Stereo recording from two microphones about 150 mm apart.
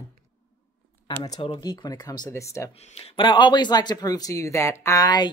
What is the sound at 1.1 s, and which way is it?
Speech, 25° left (ahead or behind).